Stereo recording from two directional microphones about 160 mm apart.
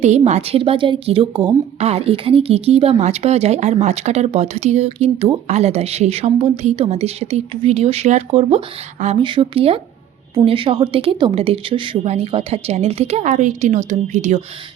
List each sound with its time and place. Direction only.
0.0 s a woman's voice: 45° right (ahead or behind); by 1.5 s 30° right (ahead or behind)
1.8 s a woman's voice: 40° right (ahead or behind)
9.2 s a woman's voice: 30° right (ahead or behind); by 14.4 s 50° right (ahead or behind)